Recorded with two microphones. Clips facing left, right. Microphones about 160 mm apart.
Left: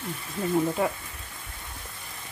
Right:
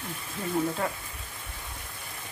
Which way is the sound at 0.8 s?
15° left (ahead or behind).